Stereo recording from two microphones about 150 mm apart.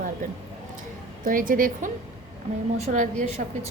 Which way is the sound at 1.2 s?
65° right (ahead or behind).